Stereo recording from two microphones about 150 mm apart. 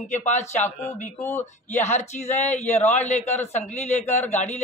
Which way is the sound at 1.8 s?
50° left (ahead or behind).